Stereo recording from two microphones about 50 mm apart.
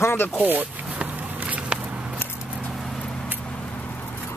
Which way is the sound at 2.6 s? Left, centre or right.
Centre.